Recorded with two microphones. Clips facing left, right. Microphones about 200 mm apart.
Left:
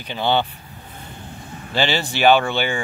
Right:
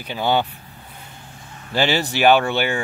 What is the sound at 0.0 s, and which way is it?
Speech, 10° right (ahead or behind).